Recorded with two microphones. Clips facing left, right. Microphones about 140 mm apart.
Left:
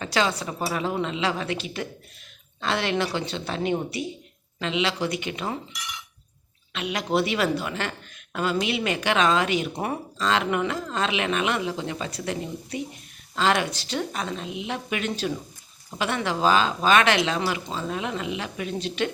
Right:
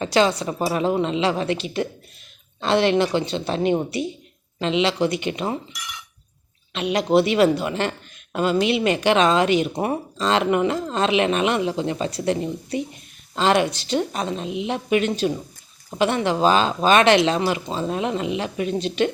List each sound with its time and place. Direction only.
0.0 s a woman's voice: 25° right (ahead or behind)
6.7 s a woman's voice: 25° right (ahead or behind)